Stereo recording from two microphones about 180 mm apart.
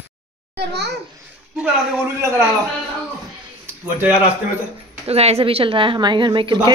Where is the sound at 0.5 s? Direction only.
70° right (ahead or behind).